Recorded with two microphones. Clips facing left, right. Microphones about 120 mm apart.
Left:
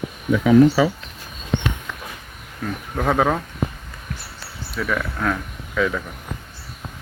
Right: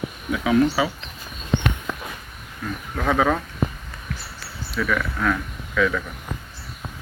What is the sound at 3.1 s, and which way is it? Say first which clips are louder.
Speech: left 1 dB; 25° left (ahead or behind).